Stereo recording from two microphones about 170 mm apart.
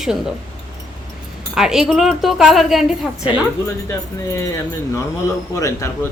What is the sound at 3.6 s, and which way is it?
Speech, 15° left (ahead or behind).